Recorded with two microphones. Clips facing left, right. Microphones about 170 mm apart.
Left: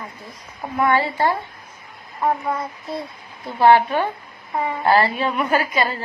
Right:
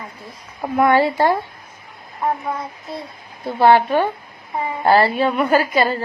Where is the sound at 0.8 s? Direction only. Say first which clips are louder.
Right 4 dB; 40° right (ahead or behind).